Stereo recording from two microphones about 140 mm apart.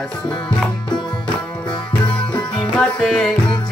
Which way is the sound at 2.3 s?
10° left (ahead or behind).